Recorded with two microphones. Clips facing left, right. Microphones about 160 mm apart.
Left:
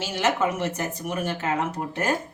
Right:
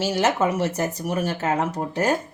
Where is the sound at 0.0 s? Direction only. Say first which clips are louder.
Right 3 dB; 40° right (ahead or behind).